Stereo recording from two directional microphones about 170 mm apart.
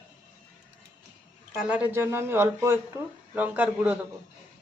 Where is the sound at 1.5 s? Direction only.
5° right (ahead or behind).